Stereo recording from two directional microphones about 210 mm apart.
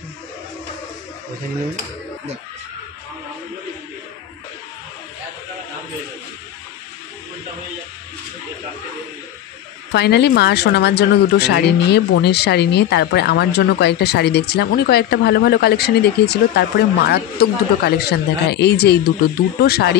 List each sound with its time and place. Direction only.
9.9 s speech: 55° left (ahead or behind)